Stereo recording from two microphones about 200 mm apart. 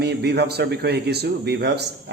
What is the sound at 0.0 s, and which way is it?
Speech, 55° right (ahead or behind).